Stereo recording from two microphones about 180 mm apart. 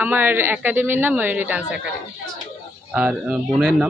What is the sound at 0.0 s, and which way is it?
Speech, 10° right (ahead or behind).